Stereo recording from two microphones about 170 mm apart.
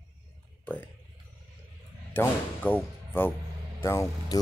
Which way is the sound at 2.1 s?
10° left (ahead or behind).